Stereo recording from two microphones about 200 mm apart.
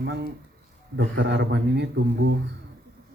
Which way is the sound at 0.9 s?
65° right (ahead or behind).